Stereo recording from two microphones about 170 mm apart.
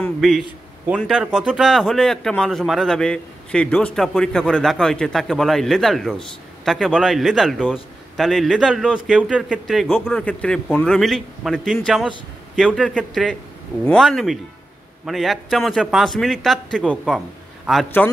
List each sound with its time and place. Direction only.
0.2 s a man's voice: centre (ahead or behind)